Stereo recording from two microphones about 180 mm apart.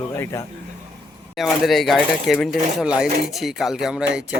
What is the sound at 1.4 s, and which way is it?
Speech, centre (ahead or behind).